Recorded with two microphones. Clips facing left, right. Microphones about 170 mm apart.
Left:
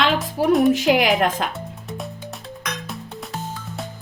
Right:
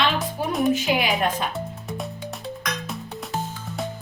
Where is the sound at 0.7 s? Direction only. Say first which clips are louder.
Left 5 dB; 90° left.